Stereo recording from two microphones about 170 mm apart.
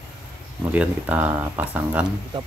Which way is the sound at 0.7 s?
10° right (ahead or behind).